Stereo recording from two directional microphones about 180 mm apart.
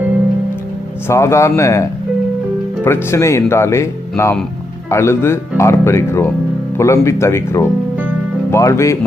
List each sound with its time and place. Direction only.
1.0 s speech: 15° left (ahead or behind)